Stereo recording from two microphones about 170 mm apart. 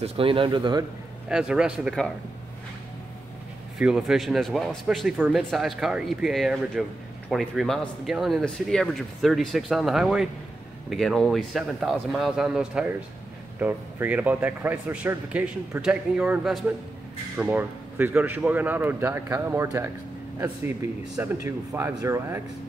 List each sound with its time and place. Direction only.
0.0 s speech: 35° right (ahead or behind)
1.3 s a man's voice: 5° right (ahead or behind)
3.7 s a man's voice: 5° right (ahead or behind)